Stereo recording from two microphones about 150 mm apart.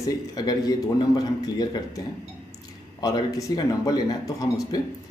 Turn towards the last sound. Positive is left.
turn(degrees=25)  # may be behind; listen again after turning